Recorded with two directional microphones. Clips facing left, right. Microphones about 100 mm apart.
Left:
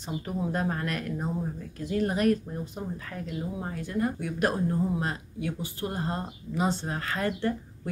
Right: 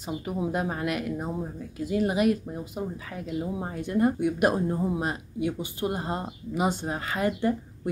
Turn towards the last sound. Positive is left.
turn(degrees=-15)  # may be behind; listen again after turning